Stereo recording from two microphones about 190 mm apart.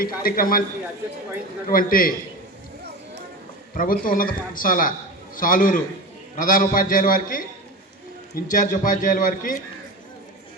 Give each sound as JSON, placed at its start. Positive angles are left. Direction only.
{"t": 0.0, "sound": "a man's voice", "side_deg": 50}
{"t": 1.6, "sound": "a man's voice", "side_deg": 50}
{"t": 3.8, "sound": "a man's voice", "side_deg": 50}
{"t": 8.4, "sound": "a man's voice", "side_deg": 45}